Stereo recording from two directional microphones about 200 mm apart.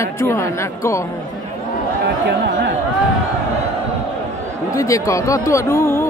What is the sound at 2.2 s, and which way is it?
Speech, 60° right (ahead or behind).